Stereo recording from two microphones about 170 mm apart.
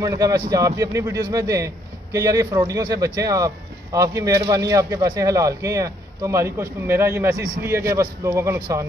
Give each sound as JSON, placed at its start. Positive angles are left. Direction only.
{"t": 0.0, "sound": "a man's voice", "side_deg": -20}